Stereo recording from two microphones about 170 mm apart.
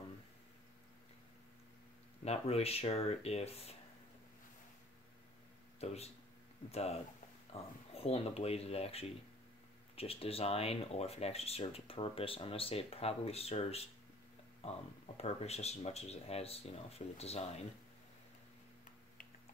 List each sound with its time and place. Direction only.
2.2 s speech: 35° left (ahead or behind)
5.8 s speech: 40° left (ahead or behind)